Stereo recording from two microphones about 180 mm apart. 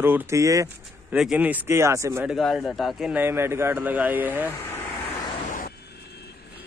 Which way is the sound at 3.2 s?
15° right (ahead or behind).